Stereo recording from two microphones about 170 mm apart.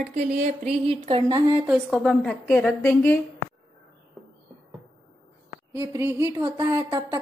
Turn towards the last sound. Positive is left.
turn(degrees=-20)  # may be behind; listen again after turning